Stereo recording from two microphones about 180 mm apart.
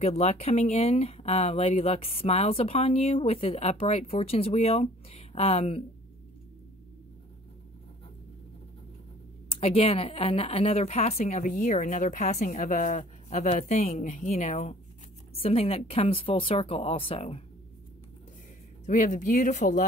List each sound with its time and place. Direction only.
0.0 s speech: 35° left (ahead or behind)
9.5 s speech: 35° left (ahead or behind)
18.9 s speech: 45° left (ahead or behind)